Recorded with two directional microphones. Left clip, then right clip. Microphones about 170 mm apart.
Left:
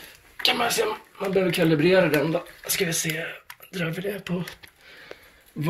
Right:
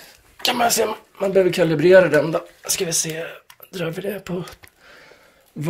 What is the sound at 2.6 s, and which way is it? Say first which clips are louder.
Speech: right 3 dB; 20° right (ahead or behind).